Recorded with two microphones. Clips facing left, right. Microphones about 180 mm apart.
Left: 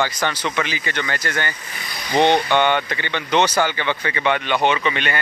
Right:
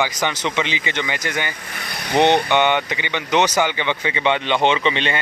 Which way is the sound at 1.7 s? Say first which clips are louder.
Right 2 dB; 60° right (ahead or behind).